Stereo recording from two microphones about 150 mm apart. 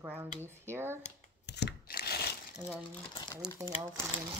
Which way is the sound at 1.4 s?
90° left.